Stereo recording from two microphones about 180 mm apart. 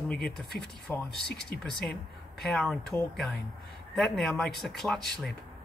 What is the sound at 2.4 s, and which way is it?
Speech, centre (ahead or behind).